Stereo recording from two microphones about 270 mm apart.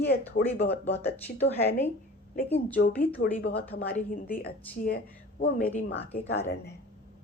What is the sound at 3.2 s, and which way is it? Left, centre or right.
A woman's voice, left.